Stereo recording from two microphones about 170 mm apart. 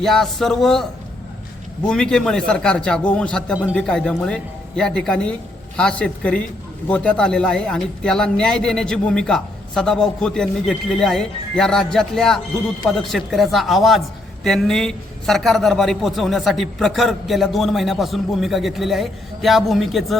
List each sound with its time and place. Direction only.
0.0 s a man's voice: centre (ahead or behind)